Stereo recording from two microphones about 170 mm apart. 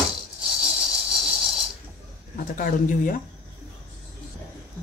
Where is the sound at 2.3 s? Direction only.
55° left (ahead or behind).